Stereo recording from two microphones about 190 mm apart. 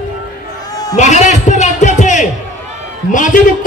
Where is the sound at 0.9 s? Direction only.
35° left (ahead or behind).